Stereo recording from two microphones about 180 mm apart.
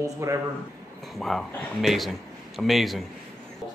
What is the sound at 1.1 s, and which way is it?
A man's voice, centre (ahead or behind).